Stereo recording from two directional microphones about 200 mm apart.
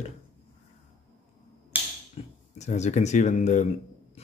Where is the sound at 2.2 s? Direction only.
30° left (ahead or behind).